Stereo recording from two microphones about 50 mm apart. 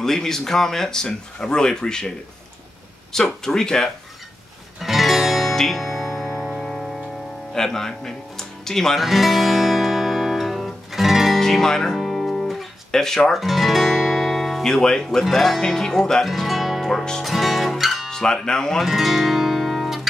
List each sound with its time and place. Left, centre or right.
0.0 s speech: centre
4.7 s guitar: centre
6.6 s music: centre
7.5 s speech: centre
9.0 s guitar: centre
11.3 s music: centre
12.9 s speech: centre
13.3 s guitar: centre
15.0 s speech: centre
16.8 s speech: centre
17.2 s music: centre
18.1 s speech: centre
18.8 s guitar: centre